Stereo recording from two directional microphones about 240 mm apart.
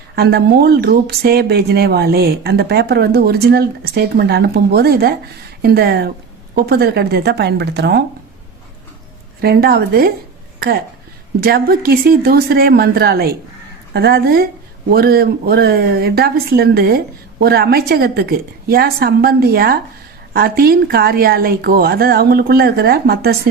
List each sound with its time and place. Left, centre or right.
0.2 s a woman's voice: right
9.4 s speech: right